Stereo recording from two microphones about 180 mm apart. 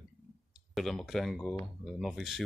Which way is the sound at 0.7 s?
Centre (ahead or behind).